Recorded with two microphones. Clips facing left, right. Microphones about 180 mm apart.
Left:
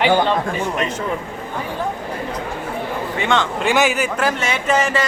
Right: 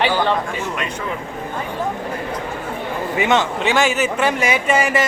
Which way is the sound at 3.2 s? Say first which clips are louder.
Right 2 dB; 20° right (ahead or behind).